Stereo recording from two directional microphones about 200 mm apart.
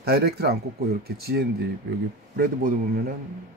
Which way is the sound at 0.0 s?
50° right (ahead or behind).